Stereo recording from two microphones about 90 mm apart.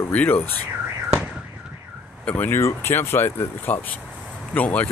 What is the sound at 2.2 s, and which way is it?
Speech, 20° left (ahead or behind).